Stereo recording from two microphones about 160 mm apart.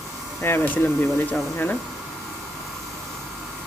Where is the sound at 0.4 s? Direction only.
15° left (ahead or behind).